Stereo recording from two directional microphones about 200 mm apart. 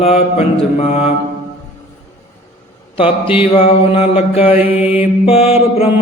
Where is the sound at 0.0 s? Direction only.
30° left (ahead or behind).